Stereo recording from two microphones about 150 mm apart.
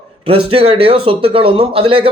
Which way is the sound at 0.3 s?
40° right (ahead or behind).